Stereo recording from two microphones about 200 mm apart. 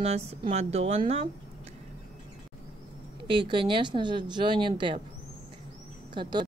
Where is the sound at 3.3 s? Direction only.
25° right (ahead or behind).